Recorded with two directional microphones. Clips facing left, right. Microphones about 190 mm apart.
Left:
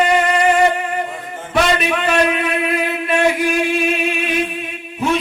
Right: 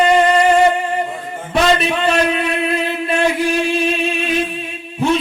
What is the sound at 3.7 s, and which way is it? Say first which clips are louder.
Chant: right 1 dB; 30° right (ahead or behind).